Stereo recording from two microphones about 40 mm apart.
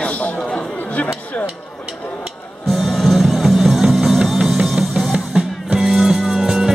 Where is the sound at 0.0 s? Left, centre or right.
Left.